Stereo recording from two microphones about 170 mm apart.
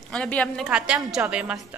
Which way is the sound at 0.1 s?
5° left (ahead or behind).